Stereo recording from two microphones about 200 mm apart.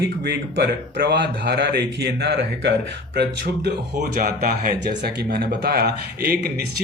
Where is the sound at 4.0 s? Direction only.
45° right (ahead or behind).